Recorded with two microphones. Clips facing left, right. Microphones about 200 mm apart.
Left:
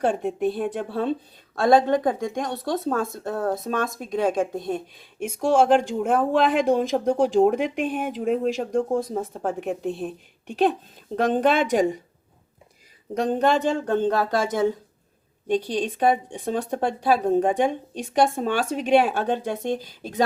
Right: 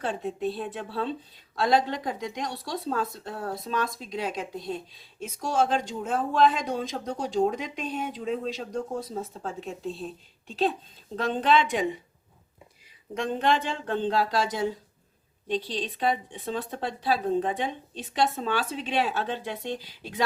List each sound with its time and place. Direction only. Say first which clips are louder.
0.0 s speech: left 7 dB; 55° left (ahead or behind)
13.1 s speech: left 5 dB; 40° left (ahead or behind)